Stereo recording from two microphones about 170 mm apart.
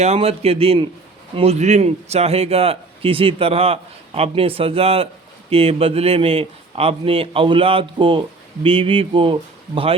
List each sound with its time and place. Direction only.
0.0 s a man's voice: 35° right (ahead or behind)